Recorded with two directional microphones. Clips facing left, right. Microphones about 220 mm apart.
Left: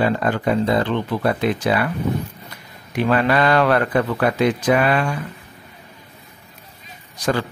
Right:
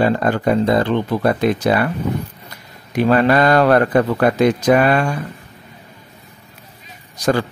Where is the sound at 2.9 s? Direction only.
40° right (ahead or behind).